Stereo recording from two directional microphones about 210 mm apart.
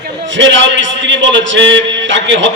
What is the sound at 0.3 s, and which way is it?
A man's voice, 60° right (ahead or behind).